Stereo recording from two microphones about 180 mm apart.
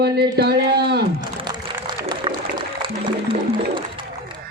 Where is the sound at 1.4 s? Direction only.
25° right (ahead or behind).